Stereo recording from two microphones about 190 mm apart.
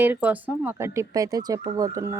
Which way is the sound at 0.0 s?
10° right (ahead or behind).